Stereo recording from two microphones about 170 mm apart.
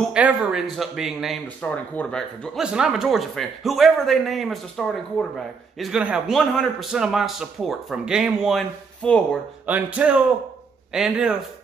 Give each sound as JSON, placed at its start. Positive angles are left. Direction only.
{"t": 0.1, "sound": "speech", "side_deg": -5}
{"t": 9.7, "sound": "music", "side_deg": -10}
{"t": 10.9, "sound": "speech", "side_deg": -5}